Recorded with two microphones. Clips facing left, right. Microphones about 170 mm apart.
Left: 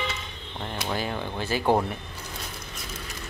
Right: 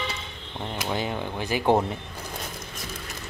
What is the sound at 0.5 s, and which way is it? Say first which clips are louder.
Speech: right 1 dB; 10° right (ahead or behind).